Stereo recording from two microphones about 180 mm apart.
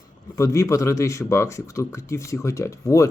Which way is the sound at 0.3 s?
15° left (ahead or behind).